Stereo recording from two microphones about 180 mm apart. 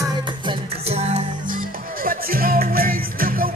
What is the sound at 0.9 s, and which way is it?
Music, 35° right (ahead or behind).